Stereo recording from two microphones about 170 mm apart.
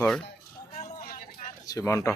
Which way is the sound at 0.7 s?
55° left (ahead or behind).